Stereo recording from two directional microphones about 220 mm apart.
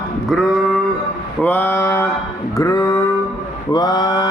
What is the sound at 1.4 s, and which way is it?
Mantra, 10° left (ahead or behind).